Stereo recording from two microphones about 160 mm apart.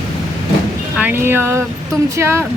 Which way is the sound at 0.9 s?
10° right (ahead or behind).